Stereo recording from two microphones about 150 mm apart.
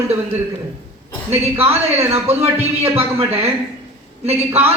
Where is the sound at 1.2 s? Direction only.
40° right (ahead or behind).